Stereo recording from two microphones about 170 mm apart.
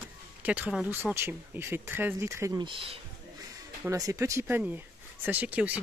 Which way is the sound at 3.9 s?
20° right (ahead or behind).